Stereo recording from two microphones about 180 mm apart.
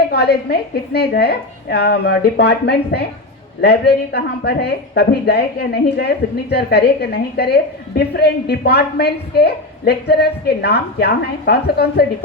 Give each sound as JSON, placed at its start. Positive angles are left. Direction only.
{"t": 0.1, "sound": "a woman's voice", "side_deg": 65}